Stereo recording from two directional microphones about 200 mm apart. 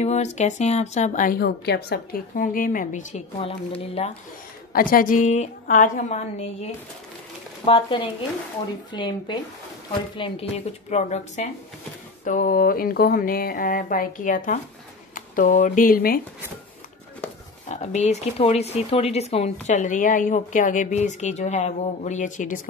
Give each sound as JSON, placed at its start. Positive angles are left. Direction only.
{"t": 0.0, "sound": "a woman's voice", "side_deg": 35}
{"t": 4.7, "sound": "a woman's voice", "side_deg": 45}
{"t": 17.6, "sound": "a woman's voice", "side_deg": 35}